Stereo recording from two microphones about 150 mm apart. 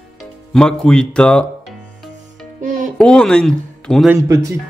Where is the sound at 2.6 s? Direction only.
60° right (ahead or behind).